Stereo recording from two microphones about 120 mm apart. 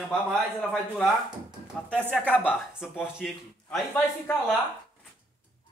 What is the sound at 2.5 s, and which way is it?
Speech, 5° right (ahead or behind).